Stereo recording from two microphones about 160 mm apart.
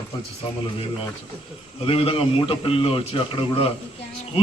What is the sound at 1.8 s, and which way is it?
A man's voice, 35° left (ahead or behind).